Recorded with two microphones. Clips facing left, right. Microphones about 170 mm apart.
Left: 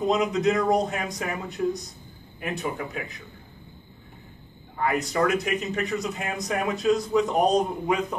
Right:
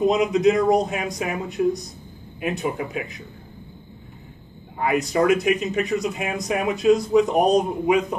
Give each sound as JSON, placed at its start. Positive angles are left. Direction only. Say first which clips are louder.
{"t": 0.1, "sound": "speech", "louder": "right 4 dB", "side_deg": -15}
{"t": 2.4, "sound": "speech", "louder": "right 5 dB", "side_deg": -15}
{"t": 4.7, "sound": "speech", "louder": "right 4 dB", "side_deg": -15}